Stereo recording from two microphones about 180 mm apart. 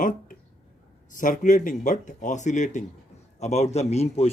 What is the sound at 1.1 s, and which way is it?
A man's voice, 45° left (ahead or behind).